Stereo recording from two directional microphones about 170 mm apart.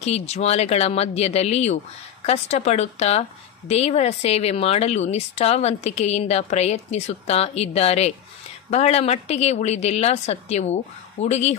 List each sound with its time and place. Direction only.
0.0 s a woman's voice: 40° left (ahead or behind)